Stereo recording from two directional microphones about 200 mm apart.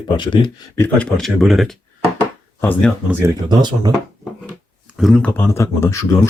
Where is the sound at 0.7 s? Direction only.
10° left (ahead or behind).